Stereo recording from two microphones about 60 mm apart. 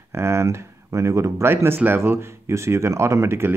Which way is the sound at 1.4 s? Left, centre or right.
Right.